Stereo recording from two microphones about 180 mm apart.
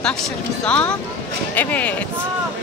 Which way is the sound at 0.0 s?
5° left (ahead or behind).